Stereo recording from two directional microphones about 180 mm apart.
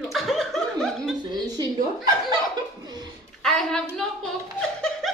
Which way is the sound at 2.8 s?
20° right (ahead or behind).